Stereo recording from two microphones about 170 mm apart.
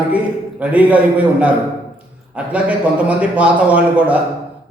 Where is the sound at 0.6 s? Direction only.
10° right (ahead or behind).